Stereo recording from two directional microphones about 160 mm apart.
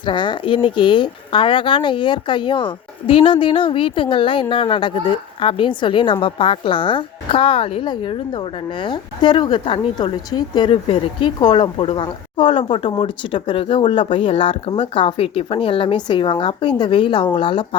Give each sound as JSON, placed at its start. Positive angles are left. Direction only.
{"t": 0.0, "sound": "speech", "side_deg": 30}